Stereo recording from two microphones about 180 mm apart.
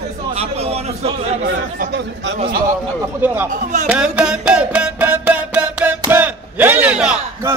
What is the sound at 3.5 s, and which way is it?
Speech, 45° right (ahead or behind).